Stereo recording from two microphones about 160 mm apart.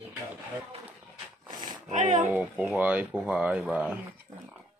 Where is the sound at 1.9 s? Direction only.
50° right (ahead or behind).